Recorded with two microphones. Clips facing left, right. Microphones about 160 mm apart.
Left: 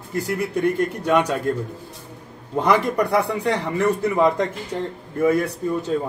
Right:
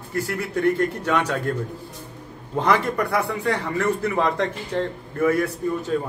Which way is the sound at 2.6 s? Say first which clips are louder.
Left 2 dB; 15° left (ahead or behind).